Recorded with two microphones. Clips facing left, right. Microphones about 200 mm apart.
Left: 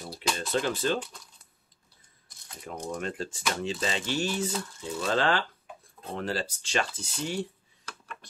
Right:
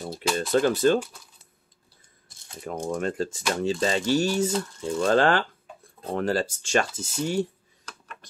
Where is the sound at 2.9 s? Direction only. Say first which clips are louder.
Right 6 dB; 40° right (ahead or behind).